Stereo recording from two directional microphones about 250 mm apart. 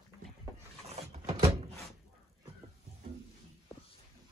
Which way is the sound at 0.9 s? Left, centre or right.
Right.